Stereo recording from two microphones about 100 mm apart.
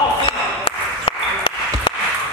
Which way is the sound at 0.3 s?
65° left (ahead or behind).